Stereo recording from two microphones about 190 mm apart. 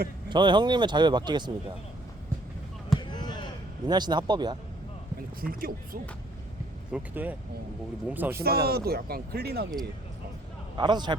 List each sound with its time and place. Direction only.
0.3 s speech: 25° right (ahead or behind)
3.0 s basketball bounce: 25° left (ahead or behind)
3.8 s speech: 20° right (ahead or behind)
5.4 s speech: 50° right (ahead or behind)
6.9 s speech: 10° right (ahead or behind)
8.6 s speech: 55° right (ahead or behind)
10.8 s speech: 25° right (ahead or behind)